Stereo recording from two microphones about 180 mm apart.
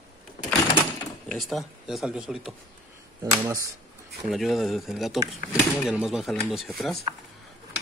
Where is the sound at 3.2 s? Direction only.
20° right (ahead or behind).